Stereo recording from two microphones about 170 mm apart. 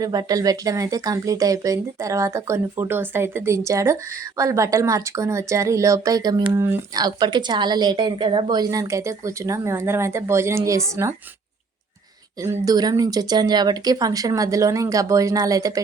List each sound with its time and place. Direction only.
0.0 s a woman's voice: 20° right (ahead or behind)
12.4 s a woman's voice: 20° right (ahead or behind)